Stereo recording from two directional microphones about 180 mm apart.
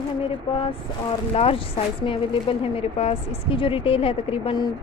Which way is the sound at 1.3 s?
30° left (ahead or behind).